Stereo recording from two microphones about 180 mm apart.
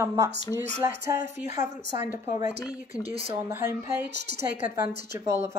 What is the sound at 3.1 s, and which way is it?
Speech, 30° right (ahead or behind).